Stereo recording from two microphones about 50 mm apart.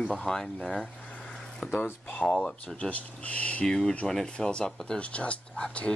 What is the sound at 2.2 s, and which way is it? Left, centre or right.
Speech, left.